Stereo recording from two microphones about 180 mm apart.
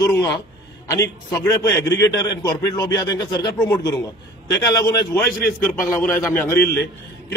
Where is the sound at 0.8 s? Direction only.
15° left (ahead or behind).